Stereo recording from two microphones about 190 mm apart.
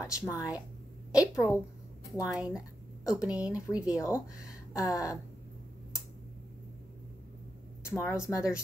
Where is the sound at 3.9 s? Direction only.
15° left (ahead or behind).